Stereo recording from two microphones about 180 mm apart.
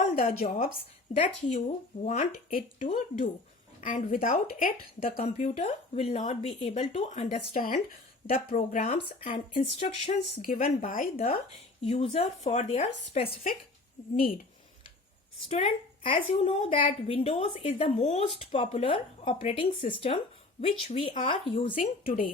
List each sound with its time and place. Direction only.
0.0 s a sound: 45° left (ahead or behind)
1.1 s a woman's voice: 35° left (ahead or behind)
2.0 s speech: 50° left (ahead or behind)
5.2 s a woman's voice: 30° left (ahead or behind)
8.9 s a woman's voice: 30° left (ahead or behind)
10.4 s speech: 50° left (ahead or behind)
11.8 s a woman's voice: 35° left (ahead or behind)
15.4 s a woman's voice: 35° left (ahead or behind)
22.0 s speech: 50° left (ahead or behind)